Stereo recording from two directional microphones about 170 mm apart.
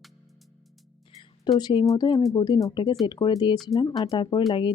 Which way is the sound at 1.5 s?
25° left (ahead or behind).